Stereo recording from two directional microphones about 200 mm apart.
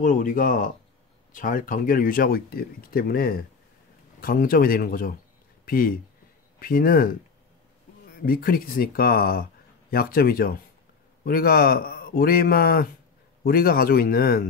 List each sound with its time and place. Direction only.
0.0 s speech: 40° left (ahead or behind)
8.3 s speech: 45° left (ahead or behind)